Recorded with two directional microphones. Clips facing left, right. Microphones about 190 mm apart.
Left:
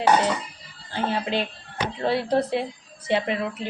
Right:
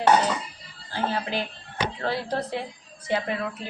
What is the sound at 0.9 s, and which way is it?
Speech, 20° left (ahead or behind).